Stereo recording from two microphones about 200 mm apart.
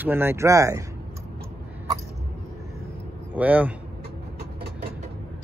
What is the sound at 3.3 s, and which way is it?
Speech, 5° right (ahead or behind).